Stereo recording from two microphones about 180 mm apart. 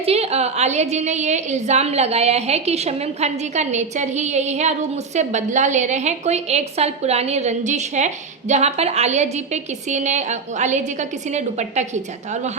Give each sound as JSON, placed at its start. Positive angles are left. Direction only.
{"t": 0.0, "sound": "a woman's voice", "side_deg": -35}